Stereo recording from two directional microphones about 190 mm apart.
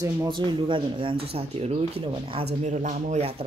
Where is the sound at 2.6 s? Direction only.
40° right (ahead or behind).